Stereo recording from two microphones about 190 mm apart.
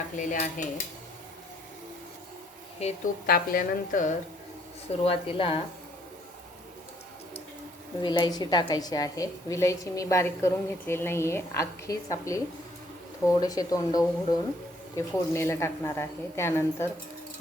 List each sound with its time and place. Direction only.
0.2 s a woman's voice: 40° left (ahead or behind)
3.2 s a woman's voice: 50° left (ahead or behind)
5.0 s a woman's voice: 30° left (ahead or behind)
8.0 s a woman's voice: 25° left (ahead or behind)